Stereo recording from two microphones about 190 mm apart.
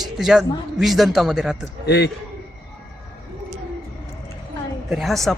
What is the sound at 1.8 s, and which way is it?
Speech, 60° left (ahead or behind).